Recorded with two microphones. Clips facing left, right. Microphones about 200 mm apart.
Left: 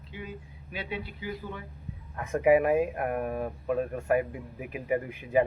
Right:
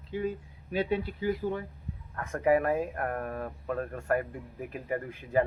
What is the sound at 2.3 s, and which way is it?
Speech, 15° left (ahead or behind).